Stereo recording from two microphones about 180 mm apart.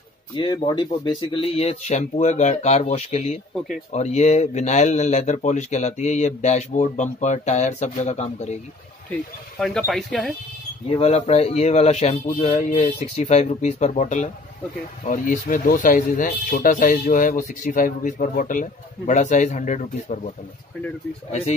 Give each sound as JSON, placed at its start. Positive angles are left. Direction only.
{"t": 0.4, "sound": "speech", "side_deg": 25}
{"t": 3.5, "sound": "speech", "side_deg": 0}
{"t": 3.9, "sound": "speech", "side_deg": 40}
{"t": 9.6, "sound": "speech", "side_deg": 0}
{"t": 10.9, "sound": "speech", "side_deg": 35}
{"t": 21.3, "sound": "speech", "side_deg": 35}